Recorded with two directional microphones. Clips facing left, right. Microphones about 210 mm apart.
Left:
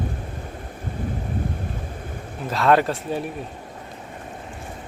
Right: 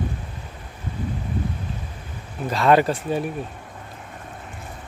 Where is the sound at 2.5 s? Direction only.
Centre (ahead or behind).